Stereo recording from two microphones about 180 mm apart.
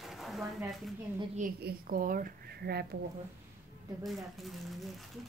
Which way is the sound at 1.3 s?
50° right (ahead or behind).